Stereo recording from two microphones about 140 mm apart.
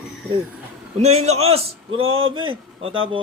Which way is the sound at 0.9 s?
50° right (ahead or behind).